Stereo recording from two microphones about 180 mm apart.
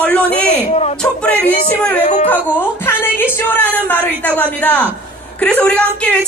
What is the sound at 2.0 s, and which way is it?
Speech, 35° left (ahead or behind).